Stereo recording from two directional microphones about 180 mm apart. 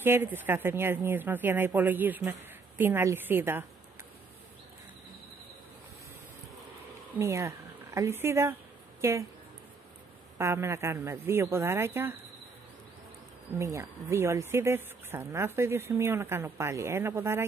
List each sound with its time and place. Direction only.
0.0 s speech: 10° right (ahead or behind)
7.2 s speech: 15° right (ahead or behind)
10.3 s speech: 15° right (ahead or behind)
13.6 s speech: 15° right (ahead or behind)